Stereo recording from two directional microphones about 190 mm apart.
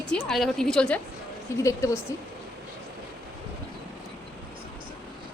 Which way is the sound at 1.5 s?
15° left (ahead or behind).